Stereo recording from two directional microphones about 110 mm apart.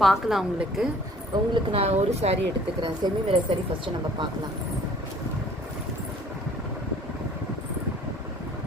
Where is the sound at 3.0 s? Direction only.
40° right (ahead or behind).